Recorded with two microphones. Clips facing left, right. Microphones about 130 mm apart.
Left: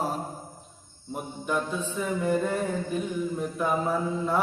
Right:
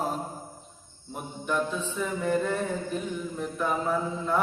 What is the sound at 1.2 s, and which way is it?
Mantra, 5° left (ahead or behind).